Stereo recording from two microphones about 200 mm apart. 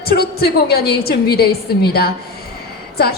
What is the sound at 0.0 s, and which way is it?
A woman's voice, 50° left (ahead or behind).